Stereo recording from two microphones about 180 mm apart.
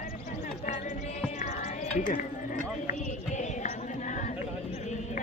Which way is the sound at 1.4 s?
40° left (ahead or behind).